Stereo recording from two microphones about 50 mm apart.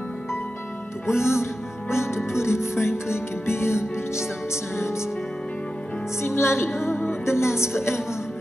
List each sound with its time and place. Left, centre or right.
1.0 s music: left
6.2 s music: left